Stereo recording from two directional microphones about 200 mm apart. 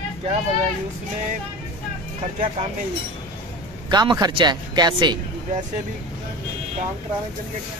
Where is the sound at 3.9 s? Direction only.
20° right (ahead or behind).